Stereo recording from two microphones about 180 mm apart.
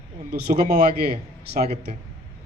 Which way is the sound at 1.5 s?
35° right (ahead or behind).